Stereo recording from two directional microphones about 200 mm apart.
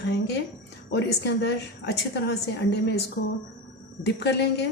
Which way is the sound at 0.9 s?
60° left (ahead or behind).